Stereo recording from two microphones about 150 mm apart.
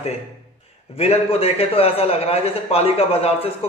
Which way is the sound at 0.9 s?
40° left (ahead or behind).